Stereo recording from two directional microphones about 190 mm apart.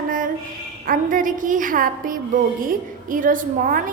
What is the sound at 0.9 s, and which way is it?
A woman's voice, 45° right (ahead or behind).